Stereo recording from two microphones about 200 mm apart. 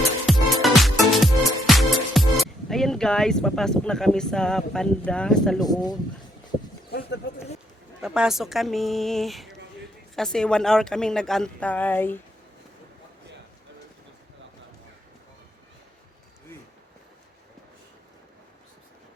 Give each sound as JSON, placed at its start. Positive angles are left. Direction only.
{"t": 0.3, "sound": "music", "side_deg": 0}
{"t": 5.5, "sound": "speech", "side_deg": 20}
{"t": 8.0, "sound": "a woman's voice", "side_deg": -5}